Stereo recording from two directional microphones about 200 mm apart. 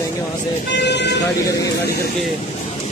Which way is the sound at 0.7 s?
55° left (ahead or behind).